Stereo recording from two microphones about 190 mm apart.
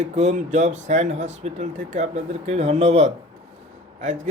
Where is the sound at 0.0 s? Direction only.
35° right (ahead or behind).